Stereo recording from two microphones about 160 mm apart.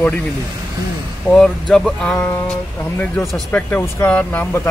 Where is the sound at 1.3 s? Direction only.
5° left (ahead or behind).